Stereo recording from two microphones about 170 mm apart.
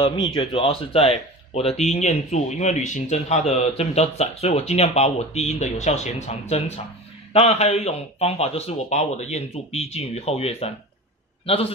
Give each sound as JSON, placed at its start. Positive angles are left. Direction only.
{"t": 0.2, "sound": "speech", "side_deg": 25}
{"t": 7.3, "sound": "speech", "side_deg": 40}